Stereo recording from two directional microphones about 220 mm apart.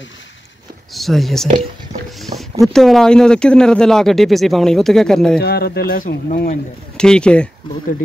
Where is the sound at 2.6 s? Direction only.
Centre (ahead or behind).